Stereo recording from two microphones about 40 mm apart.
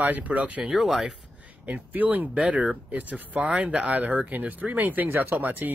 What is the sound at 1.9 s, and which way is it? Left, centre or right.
Speech, right.